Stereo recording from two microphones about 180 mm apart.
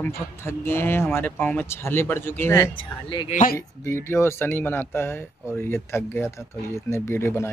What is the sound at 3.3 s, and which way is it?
Speech, 50° left (ahead or behind).